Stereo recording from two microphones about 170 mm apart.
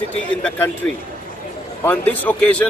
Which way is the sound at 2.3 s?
10° left (ahead or behind).